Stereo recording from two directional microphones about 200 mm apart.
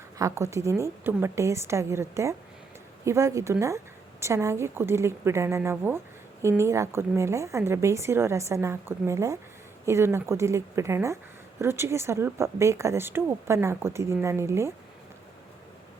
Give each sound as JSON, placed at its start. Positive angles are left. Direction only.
{"t": 0.2, "sound": "speech", "side_deg": -15}